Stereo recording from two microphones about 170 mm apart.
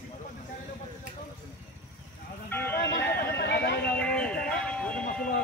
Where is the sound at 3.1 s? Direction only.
80° left.